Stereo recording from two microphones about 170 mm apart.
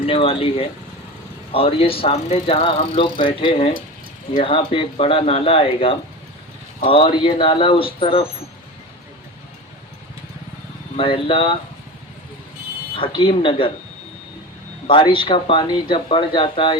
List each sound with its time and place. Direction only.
0.0 s speech: 35° left (ahead or behind)
10.9 s speech: 30° left (ahead or behind)
13.0 s speech: 30° left (ahead or behind)
14.8 s speech: 30° left (ahead or behind)